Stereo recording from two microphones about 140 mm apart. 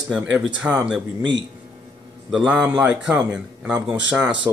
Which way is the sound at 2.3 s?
5° right (ahead or behind).